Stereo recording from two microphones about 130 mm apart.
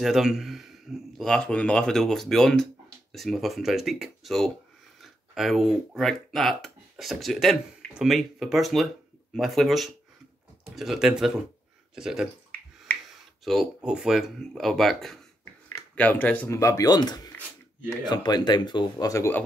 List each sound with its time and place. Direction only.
0.0 s a man's voice: centre (ahead or behind)
13.4 s speech: centre (ahead or behind)
16.5 s speech: 25° left (ahead or behind)